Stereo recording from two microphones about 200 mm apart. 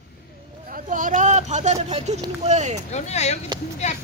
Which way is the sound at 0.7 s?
40° right (ahead or behind).